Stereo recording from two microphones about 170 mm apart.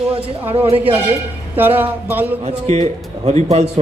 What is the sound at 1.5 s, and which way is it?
Speech, 10° right (ahead or behind).